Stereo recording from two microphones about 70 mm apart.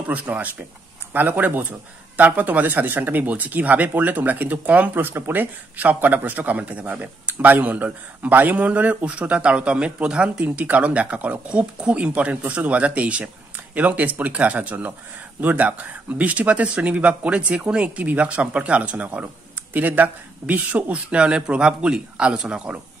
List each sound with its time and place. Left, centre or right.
0.1 s speech: right